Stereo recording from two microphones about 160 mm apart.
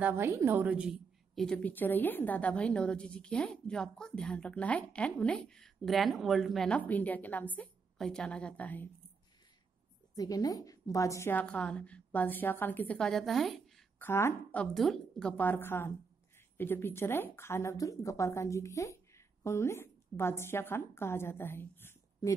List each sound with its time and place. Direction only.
0.0 s a woman's voice: 15° right (ahead or behind); by 8.8 s 10° left (ahead or behind)
10.1 s a woman's voice: 20° left (ahead or behind); by 13.8 s centre (ahead or behind)
13.9 s a woman's voice: 15° left (ahead or behind)